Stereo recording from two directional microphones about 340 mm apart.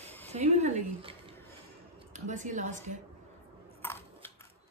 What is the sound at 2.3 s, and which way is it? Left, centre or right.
Speech, right.